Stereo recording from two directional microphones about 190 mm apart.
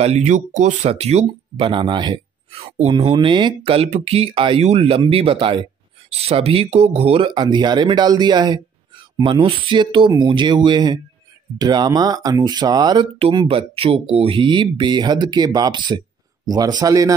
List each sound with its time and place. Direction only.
0.0 s speech: 35° right (ahead or behind); by 17.1 s 20° right (ahead or behind)